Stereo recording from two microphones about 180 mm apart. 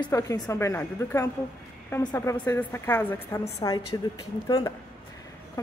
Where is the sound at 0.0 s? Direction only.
15° left (ahead or behind).